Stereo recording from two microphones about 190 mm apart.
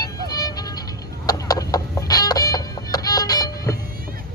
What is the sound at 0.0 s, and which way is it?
Music, 20° left (ahead or behind).